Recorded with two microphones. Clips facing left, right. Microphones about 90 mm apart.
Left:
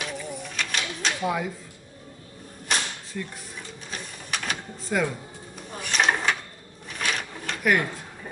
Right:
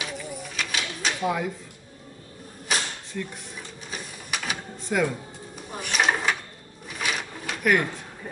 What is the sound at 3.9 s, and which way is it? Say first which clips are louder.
Printer: even; 5° right (ahead or behind).